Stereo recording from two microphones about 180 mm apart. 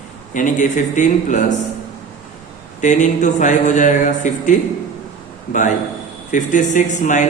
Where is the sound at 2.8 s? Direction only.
40° left (ahead or behind).